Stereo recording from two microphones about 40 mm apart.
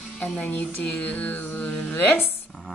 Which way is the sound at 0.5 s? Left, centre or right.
Left.